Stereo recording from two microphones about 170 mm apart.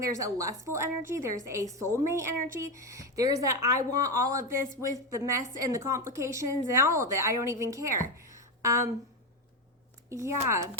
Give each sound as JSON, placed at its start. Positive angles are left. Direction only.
{"t": 0.0, "sound": "a woman's voice", "side_deg": -20}
{"t": 8.2, "sound": "a sound", "side_deg": -20}
{"t": 10.1, "sound": "a woman's voice", "side_deg": -15}